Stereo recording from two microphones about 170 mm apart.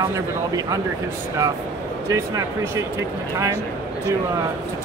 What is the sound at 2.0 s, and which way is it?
Speech, 15° right (ahead or behind).